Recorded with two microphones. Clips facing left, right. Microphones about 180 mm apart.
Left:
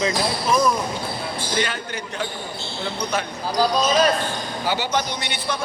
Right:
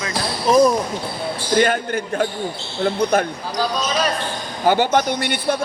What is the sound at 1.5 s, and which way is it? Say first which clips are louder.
Speech: right 10 dB; 50° right (ahead or behind).